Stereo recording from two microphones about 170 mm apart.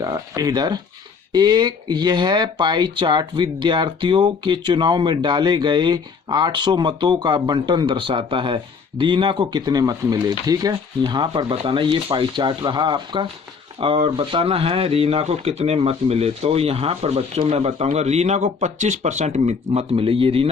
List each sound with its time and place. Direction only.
0.0 s speech: 20° right (ahead or behind)